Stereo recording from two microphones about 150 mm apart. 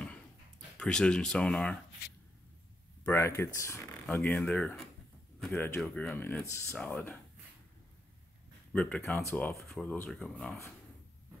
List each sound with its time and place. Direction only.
0.7 s speech: 5° left (ahead or behind)
3.1 s speech: 15° left (ahead or behind)
8.7 s speech: 5° left (ahead or behind)
9.6 s speech: centre (ahead or behind)